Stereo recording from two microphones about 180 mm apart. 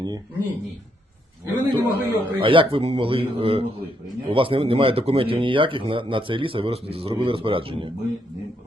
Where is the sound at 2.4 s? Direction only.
30° right (ahead or behind).